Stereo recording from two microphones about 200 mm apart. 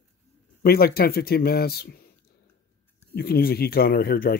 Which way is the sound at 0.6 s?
50° left (ahead or behind).